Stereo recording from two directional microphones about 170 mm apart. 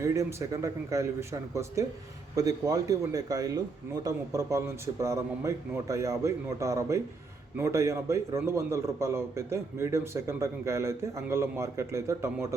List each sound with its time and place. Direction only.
0.0 s a man's voice: 15° right (ahead or behind)